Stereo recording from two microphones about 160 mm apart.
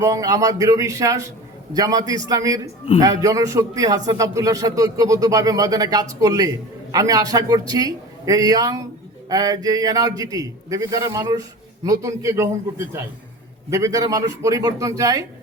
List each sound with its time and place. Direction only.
0.0 s a man's voice: 20° right (ahead or behind)